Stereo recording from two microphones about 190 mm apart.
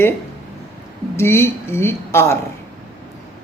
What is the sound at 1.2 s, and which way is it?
A woman's voice, 15° left (ahead or behind).